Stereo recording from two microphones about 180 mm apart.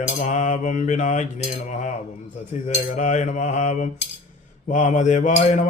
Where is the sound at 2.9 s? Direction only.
45° left (ahead or behind).